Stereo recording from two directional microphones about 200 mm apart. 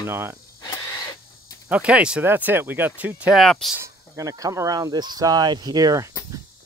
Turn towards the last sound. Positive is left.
turn(degrees=-20)  # may be behind; listen again after turning